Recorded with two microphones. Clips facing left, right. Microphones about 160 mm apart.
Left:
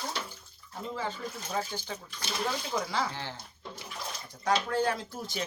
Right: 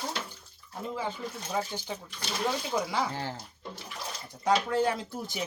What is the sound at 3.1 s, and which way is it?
Speech, 40° right (ahead or behind).